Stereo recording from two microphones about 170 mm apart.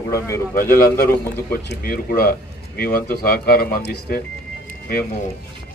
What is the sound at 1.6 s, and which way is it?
Speech, 60° left (ahead or behind).